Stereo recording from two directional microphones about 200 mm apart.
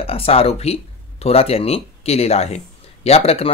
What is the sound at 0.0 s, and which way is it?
Speech, 30° left (ahead or behind).